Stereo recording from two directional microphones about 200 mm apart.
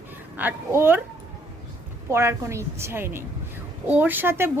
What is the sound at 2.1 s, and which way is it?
A woman's voice, 15° right (ahead or behind).